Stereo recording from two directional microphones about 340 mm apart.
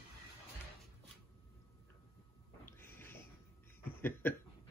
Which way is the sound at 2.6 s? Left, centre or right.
Centre.